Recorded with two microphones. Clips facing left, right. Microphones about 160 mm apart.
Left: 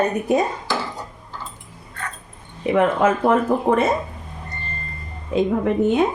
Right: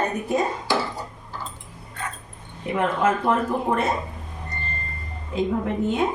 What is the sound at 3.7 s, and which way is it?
Speech, 60° left (ahead or behind).